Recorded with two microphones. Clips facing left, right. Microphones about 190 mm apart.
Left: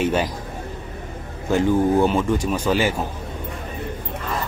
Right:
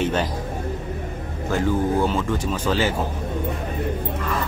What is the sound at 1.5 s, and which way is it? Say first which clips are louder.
Speech: left 4 dB; 20° left (ahead or behind).